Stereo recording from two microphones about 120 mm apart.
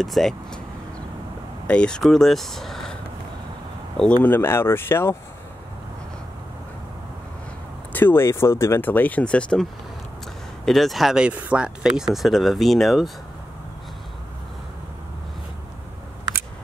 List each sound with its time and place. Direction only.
0.0 s speech: centre (ahead or behind)
1.7 s speech: 10° left (ahead or behind)
4.3 s speech: 20° left (ahead or behind)
7.9 s speech: 15° left (ahead or behind); by 13.1 s centre (ahead or behind)